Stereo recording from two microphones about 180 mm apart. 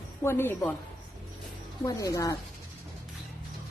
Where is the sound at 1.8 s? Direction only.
20° left (ahead or behind).